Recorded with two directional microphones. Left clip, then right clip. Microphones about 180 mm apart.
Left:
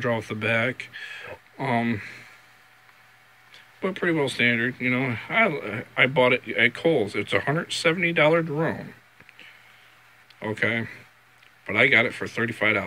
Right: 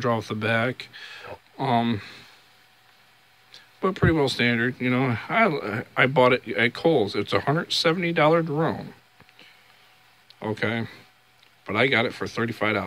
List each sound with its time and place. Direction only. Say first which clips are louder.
0.0 s speech: right 1 dB; 20° right (ahead or behind)
3.8 s speech: right 2 dB; 30° right (ahead or behind)
10.4 s speech: left 2 dB; 20° right (ahead or behind)